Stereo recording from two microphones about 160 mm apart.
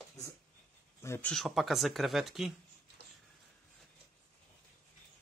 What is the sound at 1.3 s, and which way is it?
Speech, centre (ahead or behind).